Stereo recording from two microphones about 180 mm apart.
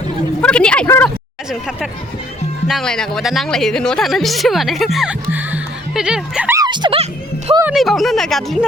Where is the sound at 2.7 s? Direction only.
Centre (ahead or behind).